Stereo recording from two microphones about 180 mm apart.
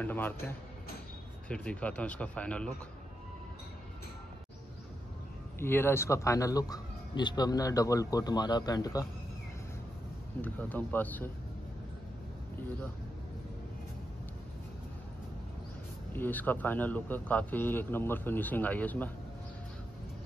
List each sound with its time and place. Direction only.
0.0 s speech: 10° left (ahead or behind)
5.6 s speech: 10° left (ahead or behind)
10.4 s speech: 10° left (ahead or behind)
16.1 s speech: 10° left (ahead or behind)